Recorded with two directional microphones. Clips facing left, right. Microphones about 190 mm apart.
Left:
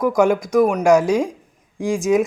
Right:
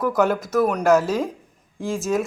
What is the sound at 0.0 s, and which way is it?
Speech, 10° left (ahead or behind).